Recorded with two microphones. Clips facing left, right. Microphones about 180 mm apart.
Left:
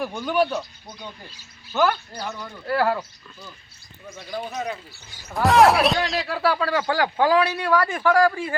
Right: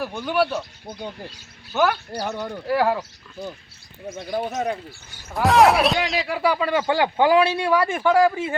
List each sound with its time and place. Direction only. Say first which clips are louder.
0.2 s speech: even; 5° right (ahead or behind)
1.7 s speech: right 1 dB; 10° right (ahead or behind)
4.3 s speech: right 4 dB; 50° right (ahead or behind)
5.3 s speech: even; centre (ahead or behind)
6.2 s speech: right 1 dB; 15° right (ahead or behind)